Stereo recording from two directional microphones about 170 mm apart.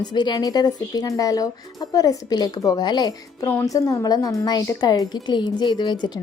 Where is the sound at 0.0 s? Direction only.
25° left (ahead or behind).